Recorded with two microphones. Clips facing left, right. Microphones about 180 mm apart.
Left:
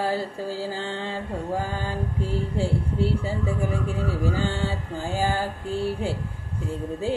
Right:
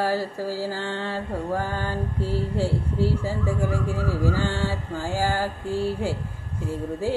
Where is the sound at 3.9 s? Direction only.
20° left (ahead or behind).